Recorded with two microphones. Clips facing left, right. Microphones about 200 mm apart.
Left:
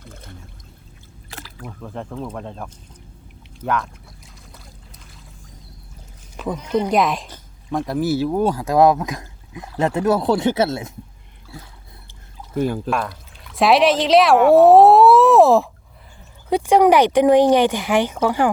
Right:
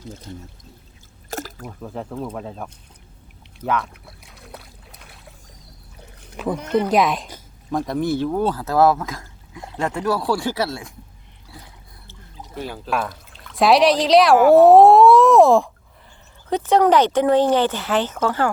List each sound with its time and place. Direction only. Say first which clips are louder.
0.0 s speech: right 6 dB; 55° left (ahead or behind)
1.3 s water: right 9 dB; 45° right (ahead or behind)
1.6 s speech: even; 5° right (ahead or behind)
4.0 s boat: right 2 dB; 65° right (ahead or behind)
6.3 s speech: right 1 dB; 10° right (ahead or behind); by 10.9 s 20° left (ahead or behind)
12.5 s speech: left 10 dB; 50° left (ahead or behind)
12.9 s speech: left 1 dB; centre (ahead or behind); by 18.5 s 15° left (ahead or behind)